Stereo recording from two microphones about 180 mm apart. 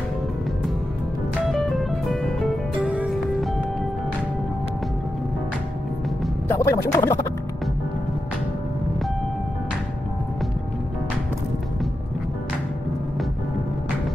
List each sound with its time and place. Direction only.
1.5 s music: centre (ahead or behind)
6.5 s speech: 15° left (ahead or behind)